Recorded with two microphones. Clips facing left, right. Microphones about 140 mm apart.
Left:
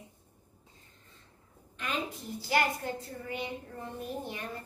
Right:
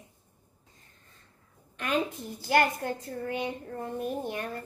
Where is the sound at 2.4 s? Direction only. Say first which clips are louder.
Right 4 dB; 50° right (ahead or behind).